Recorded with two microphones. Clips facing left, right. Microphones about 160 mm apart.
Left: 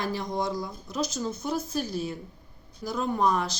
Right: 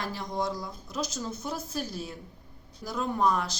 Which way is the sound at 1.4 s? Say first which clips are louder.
Left 6 dB; centre (ahead or behind).